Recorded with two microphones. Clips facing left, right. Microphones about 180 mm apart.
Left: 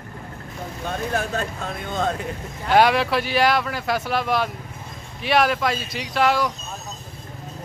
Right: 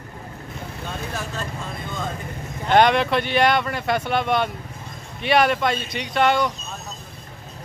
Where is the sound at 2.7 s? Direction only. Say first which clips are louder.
Right 1 dB; 5° left (ahead or behind).